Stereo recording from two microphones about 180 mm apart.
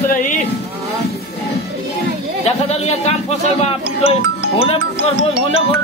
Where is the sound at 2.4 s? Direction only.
35° left (ahead or behind).